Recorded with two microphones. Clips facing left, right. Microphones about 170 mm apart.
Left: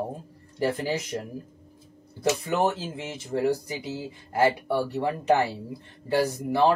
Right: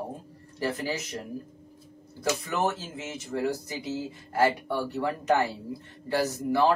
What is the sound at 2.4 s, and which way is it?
Speech, 30° left (ahead or behind).